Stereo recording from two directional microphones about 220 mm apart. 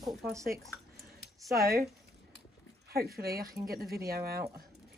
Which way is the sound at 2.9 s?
45° right (ahead or behind).